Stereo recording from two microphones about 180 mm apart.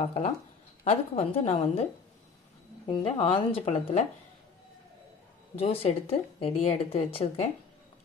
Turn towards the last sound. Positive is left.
turn(degrees=35)  # may be behind; listen again after turning